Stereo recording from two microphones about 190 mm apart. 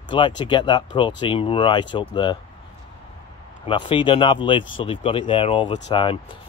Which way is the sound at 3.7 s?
25° left (ahead or behind).